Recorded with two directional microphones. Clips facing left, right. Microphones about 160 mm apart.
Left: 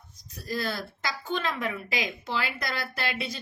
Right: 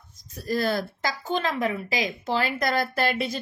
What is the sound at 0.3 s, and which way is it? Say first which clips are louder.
A woman's voice: right 7 dB; 50° right (ahead or behind).